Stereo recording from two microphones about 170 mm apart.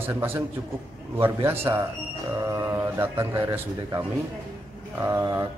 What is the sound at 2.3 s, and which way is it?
Mantra, 15° right (ahead or behind).